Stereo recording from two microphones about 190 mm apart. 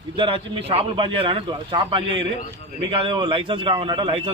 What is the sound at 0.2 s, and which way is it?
A man's voice, 25° right (ahead or behind).